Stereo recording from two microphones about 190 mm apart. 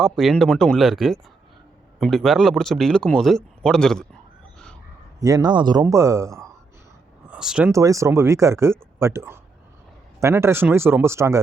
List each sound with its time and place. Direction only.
0.0 s speech: centre (ahead or behind)
5.2 s speech: 20° right (ahead or behind)
7.3 s a sound: 5° right (ahead or behind)
7.7 s speech: 15° right (ahead or behind)